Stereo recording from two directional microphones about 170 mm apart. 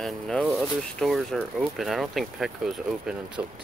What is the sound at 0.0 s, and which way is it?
Speech, centre (ahead or behind).